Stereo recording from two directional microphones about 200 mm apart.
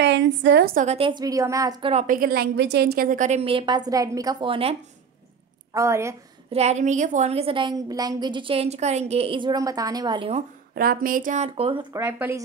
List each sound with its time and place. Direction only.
0.0 s a woman's voice: 60° right (ahead or behind)
0.8 s a woman's voice: 25° right (ahead or behind)
2.0 s a woman's voice: 45° right (ahead or behind); by 4.7 s 25° right (ahead or behind)
5.7 s a woman's voice: 15° right (ahead or behind)
6.5 s a woman's voice: 35° right (ahead or behind)
10.7 s a woman's voice: 45° right (ahead or behind); by 12.4 s 10° right (ahead or behind)